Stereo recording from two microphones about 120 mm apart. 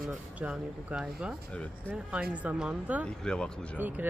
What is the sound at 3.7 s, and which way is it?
Speech, 15° right (ahead or behind).